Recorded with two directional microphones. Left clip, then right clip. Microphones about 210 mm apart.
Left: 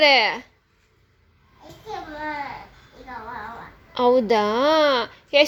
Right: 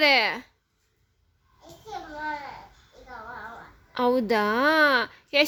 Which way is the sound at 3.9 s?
40° right (ahead or behind).